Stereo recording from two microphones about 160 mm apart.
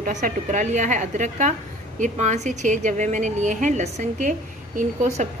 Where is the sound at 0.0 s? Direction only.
55° right (ahead or behind).